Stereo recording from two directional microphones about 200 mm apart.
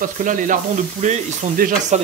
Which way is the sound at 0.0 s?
40° right (ahead or behind).